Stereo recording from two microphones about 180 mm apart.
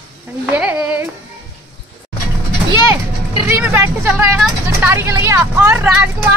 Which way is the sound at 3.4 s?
10° right (ahead or behind).